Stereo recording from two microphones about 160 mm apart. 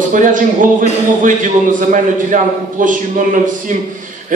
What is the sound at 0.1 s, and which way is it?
A man's voice, 55° right (ahead or behind).